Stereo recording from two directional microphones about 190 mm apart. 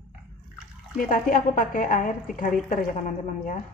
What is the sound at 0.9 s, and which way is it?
A woman's voice, 45° left (ahead or behind).